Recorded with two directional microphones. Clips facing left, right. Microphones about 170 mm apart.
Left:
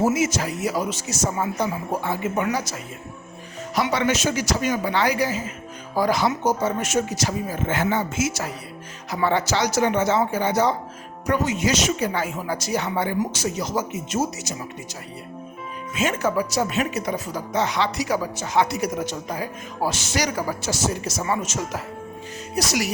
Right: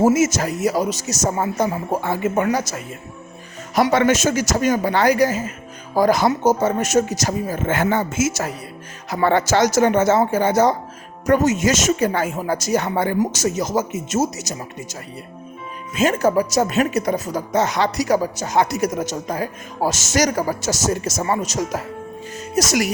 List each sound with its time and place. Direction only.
0.0 s speech: 45° right (ahead or behind)
3.8 s speech: 50° right (ahead or behind)
16.0 s speech: 40° right (ahead or behind)